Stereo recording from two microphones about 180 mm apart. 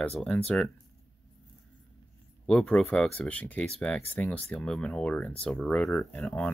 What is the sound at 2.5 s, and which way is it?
Speech, 5° left (ahead or behind).